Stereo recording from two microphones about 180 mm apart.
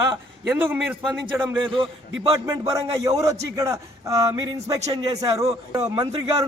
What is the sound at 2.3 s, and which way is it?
A man's voice, 20° right (ahead or behind).